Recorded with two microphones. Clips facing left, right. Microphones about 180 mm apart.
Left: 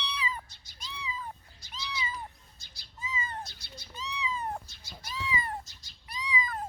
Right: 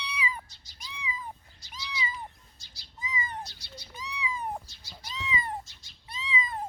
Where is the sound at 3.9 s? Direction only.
10° right (ahead or behind).